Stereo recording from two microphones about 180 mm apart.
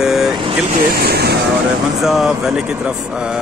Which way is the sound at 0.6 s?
50° right (ahead or behind).